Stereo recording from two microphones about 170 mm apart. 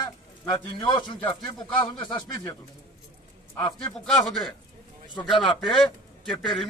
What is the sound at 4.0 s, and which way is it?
Speech, centre (ahead or behind).